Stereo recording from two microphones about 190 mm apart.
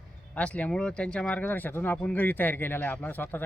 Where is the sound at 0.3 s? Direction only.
5° left (ahead or behind).